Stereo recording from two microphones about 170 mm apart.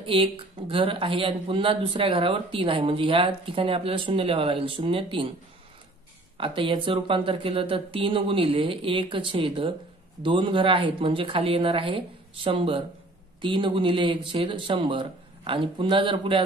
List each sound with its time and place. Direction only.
0.0 s speech: 30° right (ahead or behind)
6.3 s speech: 30° right (ahead or behind)